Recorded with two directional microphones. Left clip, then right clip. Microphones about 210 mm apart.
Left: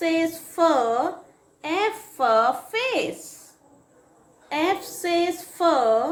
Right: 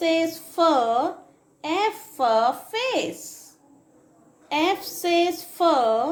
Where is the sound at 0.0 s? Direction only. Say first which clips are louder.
Right 1 dB; 25° right (ahead or behind).